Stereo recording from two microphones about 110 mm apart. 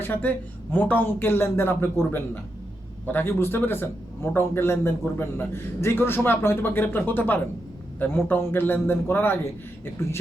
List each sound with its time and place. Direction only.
0.0 s a man's voice: 15° left (ahead or behind)